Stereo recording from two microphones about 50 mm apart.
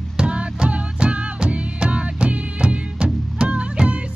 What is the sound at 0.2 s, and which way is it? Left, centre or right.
Music, centre.